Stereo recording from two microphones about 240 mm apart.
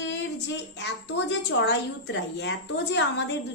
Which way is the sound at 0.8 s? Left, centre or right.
Left.